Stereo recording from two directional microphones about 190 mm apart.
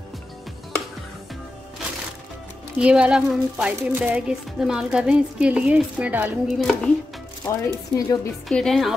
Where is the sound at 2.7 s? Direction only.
5° right (ahead or behind).